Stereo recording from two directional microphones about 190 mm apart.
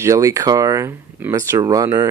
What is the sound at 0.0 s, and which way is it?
Speech, 15° right (ahead or behind).